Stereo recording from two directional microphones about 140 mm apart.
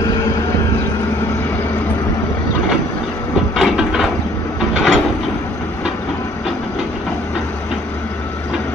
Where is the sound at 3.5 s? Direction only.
5° right (ahead or behind).